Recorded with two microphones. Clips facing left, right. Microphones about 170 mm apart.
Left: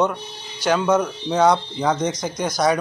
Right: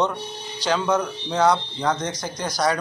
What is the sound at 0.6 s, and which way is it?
Speech, 10° left (ahead or behind).